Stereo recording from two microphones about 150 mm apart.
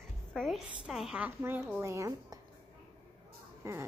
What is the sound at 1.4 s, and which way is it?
Speech, 15° right (ahead or behind).